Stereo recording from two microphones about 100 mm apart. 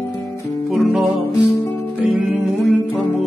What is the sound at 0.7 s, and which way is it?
Music, centre (ahead or behind).